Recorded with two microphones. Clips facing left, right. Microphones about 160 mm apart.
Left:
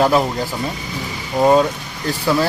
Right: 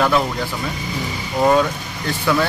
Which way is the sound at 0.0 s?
35° left (ahead or behind).